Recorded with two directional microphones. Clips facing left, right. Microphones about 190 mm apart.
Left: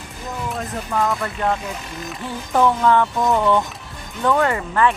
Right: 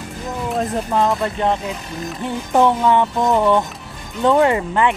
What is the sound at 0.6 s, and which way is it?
Music, 25° right (ahead or behind).